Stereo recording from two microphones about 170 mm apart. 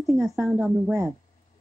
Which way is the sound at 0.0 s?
15° right (ahead or behind).